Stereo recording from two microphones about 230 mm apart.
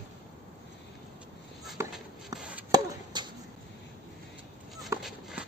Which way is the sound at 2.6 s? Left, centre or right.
Centre.